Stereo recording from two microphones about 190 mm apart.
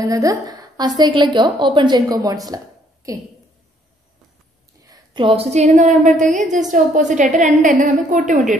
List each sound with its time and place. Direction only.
0.0 s a woman's voice: 20° right (ahead or behind)
4.8 s a woman's voice: 20° right (ahead or behind); by 8.5 s 40° right (ahead or behind)